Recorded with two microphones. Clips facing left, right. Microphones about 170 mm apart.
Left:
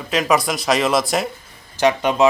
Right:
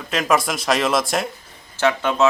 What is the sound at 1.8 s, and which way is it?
Speech, 15° left (ahead or behind).